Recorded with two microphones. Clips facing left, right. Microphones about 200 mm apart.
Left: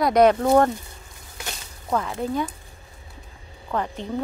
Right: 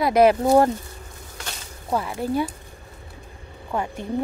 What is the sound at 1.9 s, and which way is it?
Speech, 10° right (ahead or behind).